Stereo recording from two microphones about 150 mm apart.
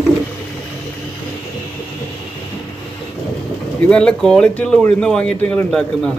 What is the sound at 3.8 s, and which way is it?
Speech, 5° left (ahead or behind).